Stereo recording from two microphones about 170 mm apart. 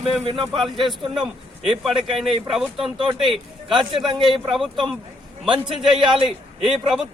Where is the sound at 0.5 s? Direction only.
Centre (ahead or behind).